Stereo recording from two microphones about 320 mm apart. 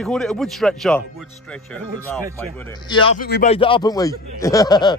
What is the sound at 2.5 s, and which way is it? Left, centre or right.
A man's voice, centre.